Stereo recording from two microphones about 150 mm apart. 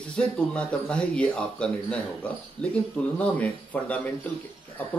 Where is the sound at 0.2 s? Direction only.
5° left (ahead or behind).